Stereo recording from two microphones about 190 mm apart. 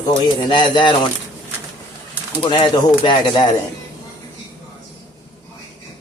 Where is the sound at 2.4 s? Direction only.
25° left (ahead or behind).